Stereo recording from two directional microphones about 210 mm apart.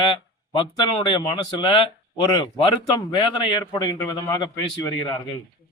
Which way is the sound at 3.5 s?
20° left (ahead or behind).